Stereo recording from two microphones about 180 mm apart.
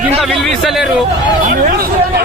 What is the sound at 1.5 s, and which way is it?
Speech, 55° right (ahead or behind).